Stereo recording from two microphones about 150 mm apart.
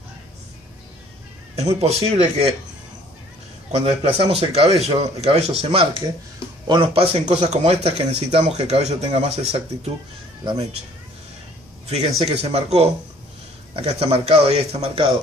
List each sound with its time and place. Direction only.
1.5 s speech: 45° right (ahead or behind)
3.7 s speech: 40° right (ahead or behind)
11.9 s speech: 45° right (ahead or behind)